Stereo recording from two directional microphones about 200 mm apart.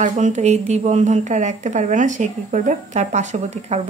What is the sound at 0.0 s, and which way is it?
A woman's voice, 35° right (ahead or behind).